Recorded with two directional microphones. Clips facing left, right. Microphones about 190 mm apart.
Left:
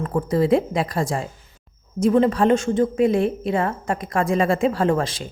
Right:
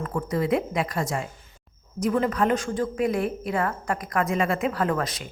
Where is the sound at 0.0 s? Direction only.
30° left (ahead or behind).